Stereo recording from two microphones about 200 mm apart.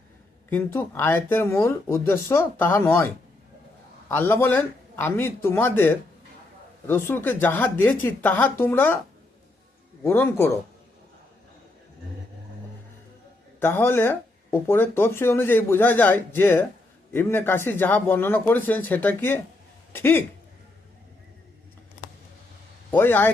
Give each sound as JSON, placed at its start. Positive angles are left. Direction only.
{"t": 0.5, "sound": "speech", "side_deg": 10}
{"t": 4.1, "sound": "speech", "side_deg": 10}
{"t": 10.0, "sound": "speech", "side_deg": 10}
{"t": 13.6, "sound": "speech", "side_deg": 10}
{"t": 22.9, "sound": "a man's voice", "side_deg": 10}